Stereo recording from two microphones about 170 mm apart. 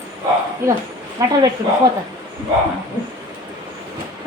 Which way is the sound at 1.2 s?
20° right (ahead or behind).